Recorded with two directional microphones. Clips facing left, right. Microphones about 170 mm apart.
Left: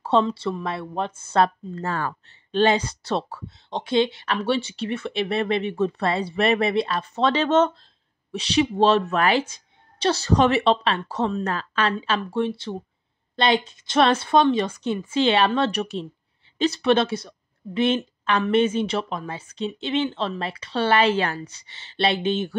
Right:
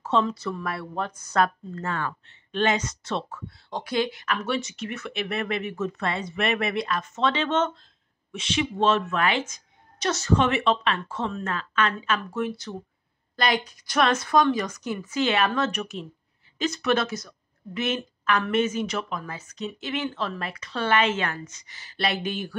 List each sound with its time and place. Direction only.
0.0 s a woman's voice: 30° left (ahead or behind)
3.4 s a woman's voice: 20° left (ahead or behind)